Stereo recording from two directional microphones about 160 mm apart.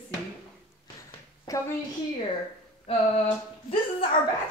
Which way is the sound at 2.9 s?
35° left (ahead or behind).